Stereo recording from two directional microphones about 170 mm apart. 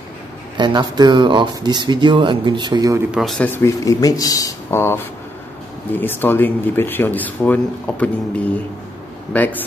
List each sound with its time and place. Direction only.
0.6 s speech: 25° right (ahead or behind)
3.2 s speech: 5° left (ahead or behind)
9.3 s speech: 10° left (ahead or behind)